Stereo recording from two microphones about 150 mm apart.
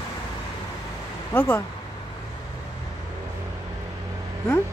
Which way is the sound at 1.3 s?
15° left (ahead or behind).